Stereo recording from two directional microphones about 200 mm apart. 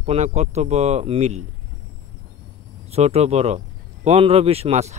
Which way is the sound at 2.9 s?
30° right (ahead or behind).